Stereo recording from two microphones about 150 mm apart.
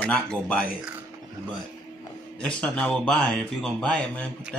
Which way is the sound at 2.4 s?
5° left (ahead or behind).